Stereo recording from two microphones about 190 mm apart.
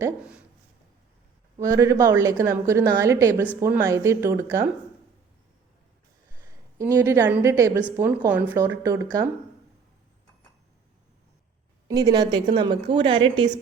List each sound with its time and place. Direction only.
1.5 s a woman's voice: 15° right (ahead or behind)
6.7 s a woman's voice: 15° right (ahead or behind)
11.9 s a woman's voice: 20° right (ahead or behind)